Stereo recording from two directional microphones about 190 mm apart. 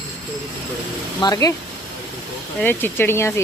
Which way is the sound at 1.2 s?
20° left (ahead or behind).